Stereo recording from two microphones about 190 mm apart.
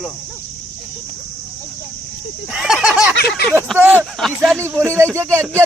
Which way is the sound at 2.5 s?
5° right (ahead or behind).